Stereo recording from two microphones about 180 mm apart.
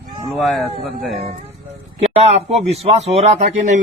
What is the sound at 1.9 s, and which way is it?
A man's voice, 35° right (ahead or behind).